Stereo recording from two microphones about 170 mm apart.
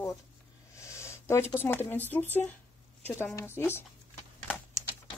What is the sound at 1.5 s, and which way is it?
Speech, 10° left (ahead or behind).